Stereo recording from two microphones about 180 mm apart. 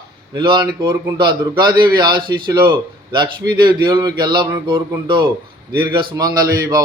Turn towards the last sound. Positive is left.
turn(degrees=-20)  # may be behind; listen again after turning